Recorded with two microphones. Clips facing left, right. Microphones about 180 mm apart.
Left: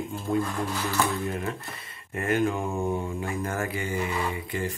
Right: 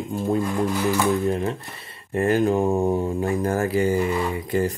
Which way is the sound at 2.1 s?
35° right (ahead or behind).